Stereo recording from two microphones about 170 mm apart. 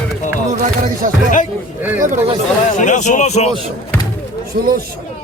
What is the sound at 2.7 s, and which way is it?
Speech, 45° left (ahead or behind).